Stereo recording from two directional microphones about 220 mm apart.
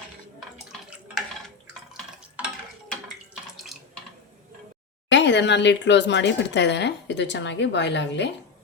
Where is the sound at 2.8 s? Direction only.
Centre (ahead or behind).